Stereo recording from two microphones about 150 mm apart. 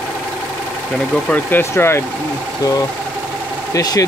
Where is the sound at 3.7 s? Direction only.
25° left (ahead or behind).